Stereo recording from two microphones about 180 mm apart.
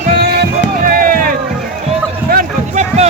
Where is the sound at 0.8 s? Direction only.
50° right (ahead or behind).